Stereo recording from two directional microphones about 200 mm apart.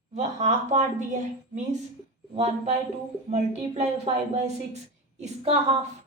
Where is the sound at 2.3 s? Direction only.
30° right (ahead or behind).